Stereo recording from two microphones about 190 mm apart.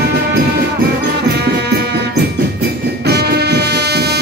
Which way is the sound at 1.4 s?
60° right (ahead or behind).